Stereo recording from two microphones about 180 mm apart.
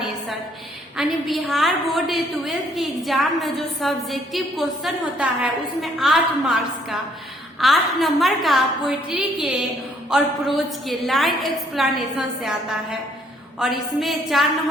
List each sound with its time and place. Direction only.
0.9 s a woman's voice: centre (ahead or behind)